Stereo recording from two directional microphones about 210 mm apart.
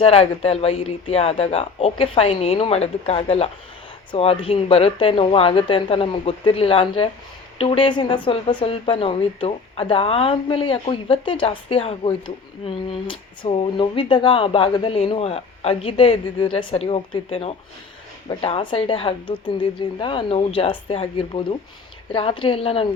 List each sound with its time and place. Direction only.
0.0 s speech: 30° left (ahead or behind)